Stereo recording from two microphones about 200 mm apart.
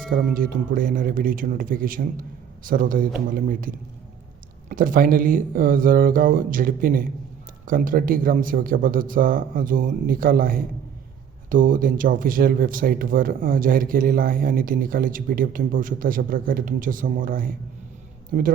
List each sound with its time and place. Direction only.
0.3 s a man's voice: 45° right (ahead or behind)